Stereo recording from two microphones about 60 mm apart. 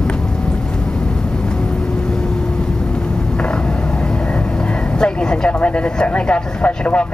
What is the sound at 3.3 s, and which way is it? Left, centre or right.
A woman's voice, centre.